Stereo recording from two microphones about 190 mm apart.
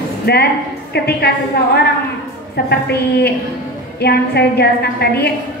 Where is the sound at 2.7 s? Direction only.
60° left (ahead or behind).